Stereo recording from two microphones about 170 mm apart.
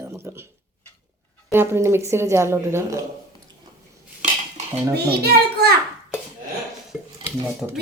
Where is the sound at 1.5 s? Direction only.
15° right (ahead or behind).